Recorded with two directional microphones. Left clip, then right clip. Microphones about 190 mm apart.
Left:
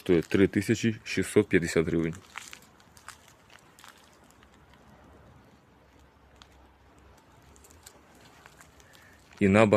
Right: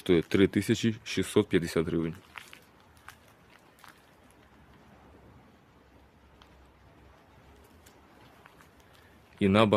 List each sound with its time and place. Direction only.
0.0 s speech: 10° right (ahead or behind); by 2.1 s 20° left (ahead or behind)
2.3 s a sound: 50° left (ahead or behind)
9.4 s speech: 15° left (ahead or behind)